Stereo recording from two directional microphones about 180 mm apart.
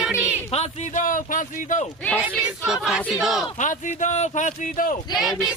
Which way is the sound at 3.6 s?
45° left (ahead or behind).